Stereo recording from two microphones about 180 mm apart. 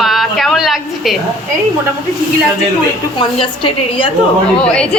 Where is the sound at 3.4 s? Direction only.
30° left (ahead or behind).